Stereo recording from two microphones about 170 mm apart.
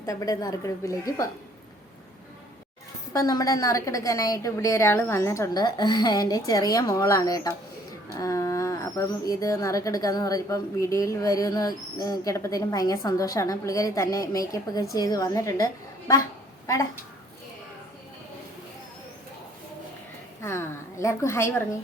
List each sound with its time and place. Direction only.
0.0 s speech: 20° left (ahead or behind)
3.1 s speech: 20° left (ahead or behind)
20.4 s a woman's voice: 15° left (ahead or behind)